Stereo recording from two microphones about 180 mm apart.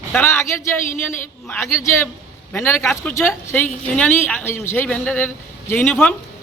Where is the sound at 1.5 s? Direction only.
15° left (ahead or behind).